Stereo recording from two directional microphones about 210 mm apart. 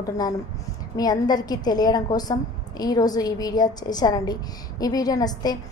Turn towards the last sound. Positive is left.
turn(degrees=20)  # may be behind; listen again after turning